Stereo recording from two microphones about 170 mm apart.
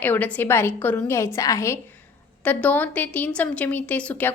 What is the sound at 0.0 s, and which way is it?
A woman's voice, 10° left (ahead or behind).